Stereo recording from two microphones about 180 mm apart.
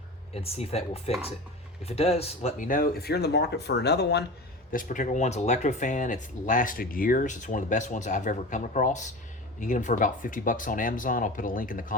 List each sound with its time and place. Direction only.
0.4 s speech: 35° left (ahead or behind); by 4.2 s 65° left (ahead or behind)
4.7 s speech: 50° left (ahead or behind)